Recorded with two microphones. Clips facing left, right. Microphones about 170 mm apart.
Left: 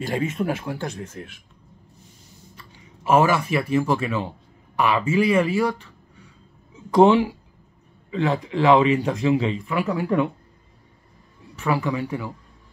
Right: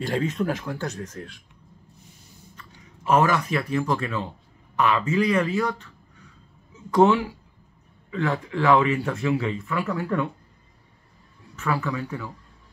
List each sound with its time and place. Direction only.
0.0 s speech: 5° left (ahead or behind)
2.5 s speech: 10° left (ahead or behind)
6.9 s speech: 15° left (ahead or behind)
8.1 s a man's voice: 30° left (ahead or behind)
11.5 s speech: 15° left (ahead or behind)